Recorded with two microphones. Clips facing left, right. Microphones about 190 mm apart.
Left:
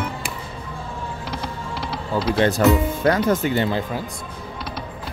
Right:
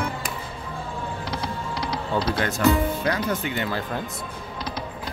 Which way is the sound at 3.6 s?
20° left (ahead or behind).